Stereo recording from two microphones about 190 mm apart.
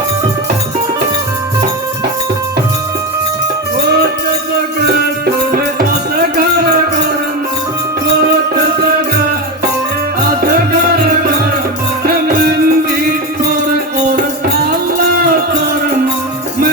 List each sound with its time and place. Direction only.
4.9 s music: 55° right (ahead or behind)
12.0 s music: 55° right (ahead or behind)